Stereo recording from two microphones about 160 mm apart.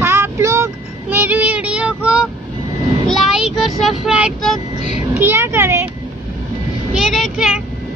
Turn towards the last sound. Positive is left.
turn(degrees=-5)  # may be behind; listen again after turning